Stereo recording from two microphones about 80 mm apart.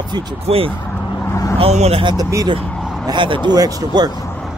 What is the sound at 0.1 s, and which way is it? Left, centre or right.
Speech, right.